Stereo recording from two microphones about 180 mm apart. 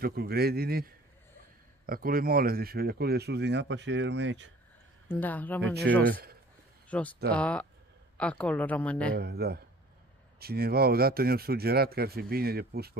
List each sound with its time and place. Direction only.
0.0 s speech: 60° right (ahead or behind); by 4.5 s 85° right
5.0 s speech: 10° left (ahead or behind)
5.9 s speech: 75° right (ahead or behind)
6.9 s speech: 5° left (ahead or behind)
9.1 s speech: 60° right (ahead or behind)